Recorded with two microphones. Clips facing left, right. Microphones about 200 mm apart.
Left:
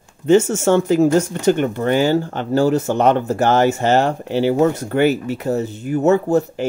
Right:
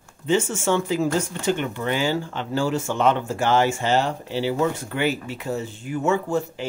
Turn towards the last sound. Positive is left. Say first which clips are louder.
# left 7 dB
turn(degrees=40)  # may be behind; listen again after turning